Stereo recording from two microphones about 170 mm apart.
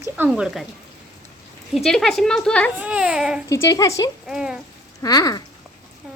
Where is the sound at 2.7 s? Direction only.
10° right (ahead or behind).